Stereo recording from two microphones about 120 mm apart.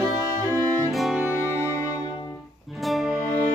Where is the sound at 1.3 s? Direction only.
15° right (ahead or behind).